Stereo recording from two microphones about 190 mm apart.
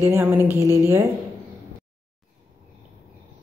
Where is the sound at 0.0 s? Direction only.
15° right (ahead or behind).